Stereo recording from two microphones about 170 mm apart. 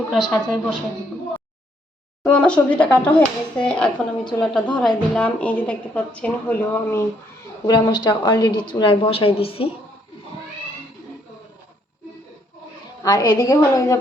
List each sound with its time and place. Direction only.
0.1 s a woman's voice: centre (ahead or behind)
2.2 s a woman's voice: 5° left (ahead or behind)
7.7 s a woman's voice: 25° left (ahead or behind)
13.0 s a woman's voice: 20° left (ahead or behind)